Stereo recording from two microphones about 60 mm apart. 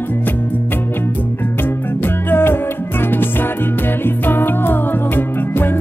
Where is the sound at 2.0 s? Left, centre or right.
Left.